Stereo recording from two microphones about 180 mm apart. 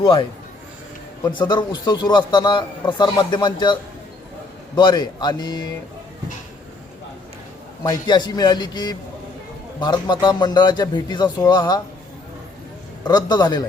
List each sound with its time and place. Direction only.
0.0 s a man's voice: 30° left (ahead or behind)
7.9 s a man's voice: 25° left (ahead or behind)
13.1 s a man's voice: 25° left (ahead or behind)